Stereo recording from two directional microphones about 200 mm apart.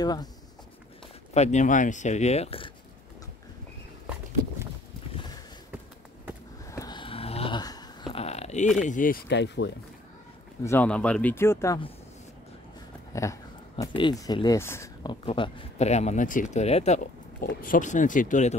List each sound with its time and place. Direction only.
0.0 s speech: 20° left (ahead or behind)
1.3 s speech: 35° left (ahead or behind)
6.7 s a sound: 20° left (ahead or behind)
8.8 s speech: 40° left (ahead or behind)
9.3 s speech: 60° left (ahead or behind)
10.6 s speech: 10° left (ahead or behind)
13.1 s speech: 15° left (ahead or behind)
15.2 s speech: 25° left (ahead or behind)